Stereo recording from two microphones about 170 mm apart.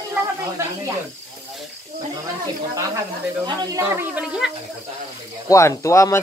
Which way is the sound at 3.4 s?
20° right (ahead or behind).